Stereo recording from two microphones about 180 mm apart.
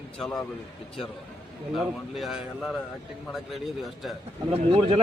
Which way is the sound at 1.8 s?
Centre (ahead or behind).